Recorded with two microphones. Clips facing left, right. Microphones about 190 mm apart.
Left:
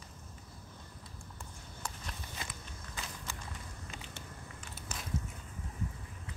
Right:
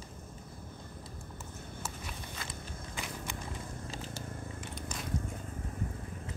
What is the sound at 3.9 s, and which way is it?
Purr, 35° right (ahead or behind).